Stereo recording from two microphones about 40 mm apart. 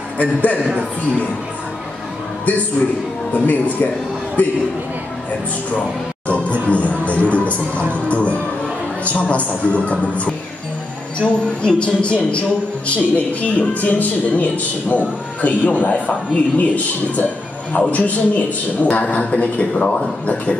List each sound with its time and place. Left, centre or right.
0.2 s a man's voice: left
3.3 s a man's voice: left
6.2 s music: left
8.1 s a man's voice: left